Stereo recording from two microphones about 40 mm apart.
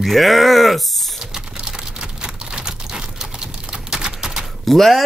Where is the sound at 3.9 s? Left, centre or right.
Centre.